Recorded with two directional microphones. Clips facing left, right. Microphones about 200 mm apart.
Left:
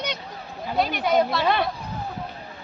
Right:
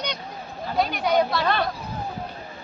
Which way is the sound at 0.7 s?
Centre (ahead or behind).